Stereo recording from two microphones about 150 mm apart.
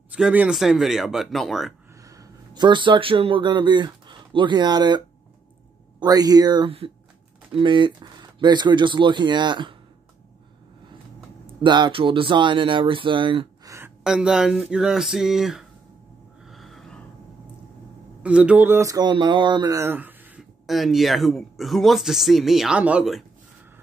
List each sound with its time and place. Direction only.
0.1 s speech: 10° right (ahead or behind)
2.0 s speech: 25° right (ahead or behind)
11.4 s speech: 30° right (ahead or behind)
13.7 s a sound: 15° right (ahead or behind)
14.0 s speech: 5° right (ahead or behind)
16.4 s gasp: centre (ahead or behind)
18.2 s speech: 10° right (ahead or behind)
20.6 s speech: centre (ahead or behind)